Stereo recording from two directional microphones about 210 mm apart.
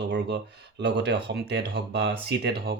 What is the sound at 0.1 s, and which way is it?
Speech, 55° right (ahead or behind).